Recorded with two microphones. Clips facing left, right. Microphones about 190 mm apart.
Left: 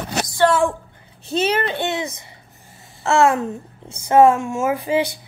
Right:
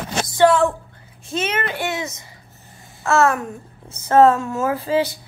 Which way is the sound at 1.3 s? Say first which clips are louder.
Left 4 dB; 35° left (ahead or behind).